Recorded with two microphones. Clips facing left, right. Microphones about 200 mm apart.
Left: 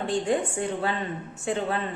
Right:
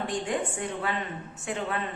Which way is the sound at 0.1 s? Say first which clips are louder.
Left 4 dB; 30° left (ahead or behind).